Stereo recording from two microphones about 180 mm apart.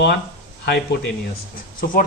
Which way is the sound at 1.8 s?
60° left (ahead or behind).